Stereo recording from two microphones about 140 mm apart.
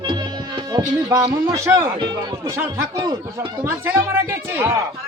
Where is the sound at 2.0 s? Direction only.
30° right (ahead or behind).